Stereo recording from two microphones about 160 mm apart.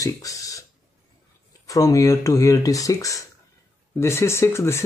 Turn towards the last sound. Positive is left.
turn(degrees=15)  # may be behind; listen again after turning